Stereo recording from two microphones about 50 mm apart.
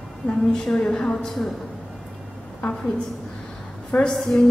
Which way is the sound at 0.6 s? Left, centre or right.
Centre.